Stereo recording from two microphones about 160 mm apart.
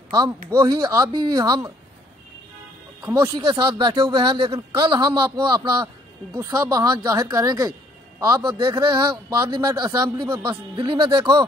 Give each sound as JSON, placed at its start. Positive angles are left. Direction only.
{"t": 0.1, "sound": "a man's voice", "side_deg": -25}
{"t": 3.3, "sound": "a man's voice", "side_deg": -25}